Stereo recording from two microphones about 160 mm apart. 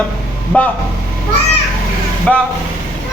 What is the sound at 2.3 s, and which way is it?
Speech, 5° left (ahead or behind).